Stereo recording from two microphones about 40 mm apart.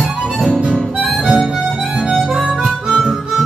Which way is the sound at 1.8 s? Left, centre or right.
Centre.